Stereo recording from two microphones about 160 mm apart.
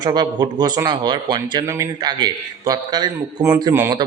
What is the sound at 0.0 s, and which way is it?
A man's voice, 25° right (ahead or behind).